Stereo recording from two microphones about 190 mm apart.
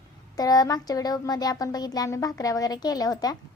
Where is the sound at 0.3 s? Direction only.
20° left (ahead or behind).